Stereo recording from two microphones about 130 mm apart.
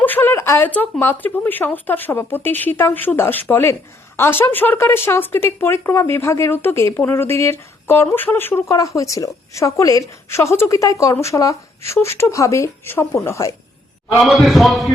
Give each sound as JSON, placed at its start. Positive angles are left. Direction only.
{"t": 0.0, "sound": "a woman's voice", "side_deg": 15}
{"t": 14.2, "sound": "a man's voice", "side_deg": 0}